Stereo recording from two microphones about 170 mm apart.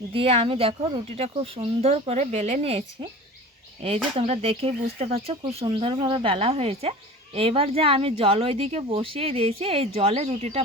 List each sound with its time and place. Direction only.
0.1 s speech: 35° right (ahead or behind)